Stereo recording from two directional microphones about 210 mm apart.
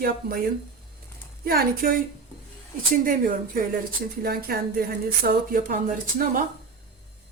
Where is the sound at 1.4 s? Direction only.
45° right (ahead or behind).